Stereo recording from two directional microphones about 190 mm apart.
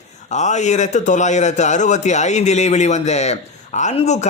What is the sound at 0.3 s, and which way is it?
A man's voice, 40° left (ahead or behind).